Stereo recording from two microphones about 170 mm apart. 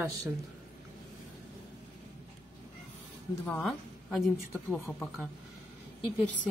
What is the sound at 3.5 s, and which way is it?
Speech, centre (ahead or behind).